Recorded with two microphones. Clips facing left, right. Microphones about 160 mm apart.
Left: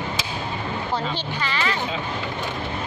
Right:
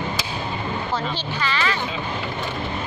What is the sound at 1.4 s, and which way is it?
Speech, 20° left (ahead or behind).